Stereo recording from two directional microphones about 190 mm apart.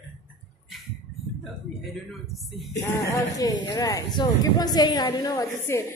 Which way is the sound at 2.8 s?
15° left (ahead or behind).